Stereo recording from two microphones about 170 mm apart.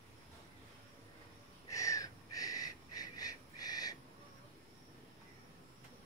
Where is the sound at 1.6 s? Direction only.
20° left (ahead or behind).